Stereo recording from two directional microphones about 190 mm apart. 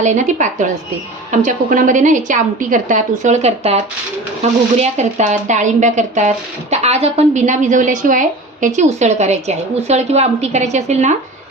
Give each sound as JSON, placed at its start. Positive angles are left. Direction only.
{"t": 0.0, "sound": "speech", "side_deg": -40}
{"t": 4.8, "sound": "speech", "side_deg": -35}